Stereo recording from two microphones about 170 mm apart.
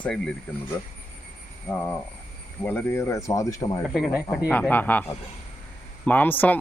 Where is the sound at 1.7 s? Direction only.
15° left (ahead or behind).